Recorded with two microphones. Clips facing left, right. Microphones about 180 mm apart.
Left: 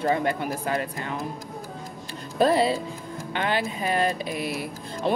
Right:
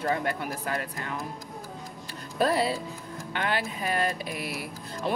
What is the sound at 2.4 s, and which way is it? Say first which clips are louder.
Speech: left 5 dB; 25° left (ahead or behind).